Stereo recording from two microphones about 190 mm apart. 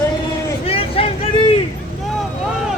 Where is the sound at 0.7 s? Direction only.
30° left (ahead or behind).